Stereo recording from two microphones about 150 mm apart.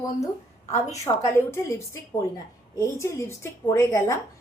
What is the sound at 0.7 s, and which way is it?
A woman's voice, 20° left (ahead or behind).